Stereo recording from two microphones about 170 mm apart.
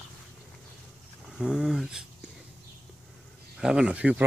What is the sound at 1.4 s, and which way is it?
Speech, centre (ahead or behind).